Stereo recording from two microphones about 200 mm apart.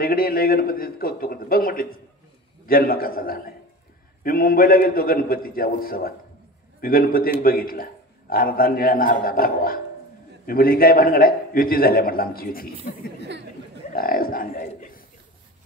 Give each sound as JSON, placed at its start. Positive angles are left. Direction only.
{"t": 0.0, "sound": "a man's voice", "side_deg": 45}
{"t": 13.9, "sound": "speech", "side_deg": 45}